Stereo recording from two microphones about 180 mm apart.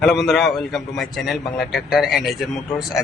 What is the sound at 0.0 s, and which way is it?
A man's voice, centre (ahead or behind).